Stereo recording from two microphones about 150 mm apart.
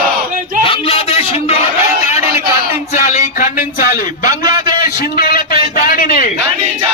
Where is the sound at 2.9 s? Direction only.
55° left (ahead or behind); by 6.2 s 75° left (ahead or behind).